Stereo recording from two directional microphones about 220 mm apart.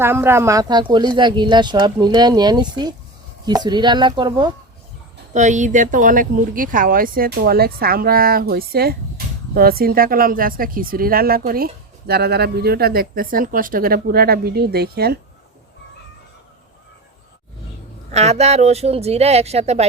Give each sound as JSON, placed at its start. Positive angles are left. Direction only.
{"t": 0.0, "sound": "speech", "side_deg": -10}
{"t": 5.3, "sound": "speech", "side_deg": -35}
{"t": 18.1, "sound": "speech", "side_deg": -30}